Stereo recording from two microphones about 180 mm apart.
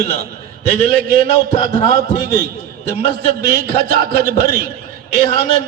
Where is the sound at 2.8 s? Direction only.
35° left (ahead or behind).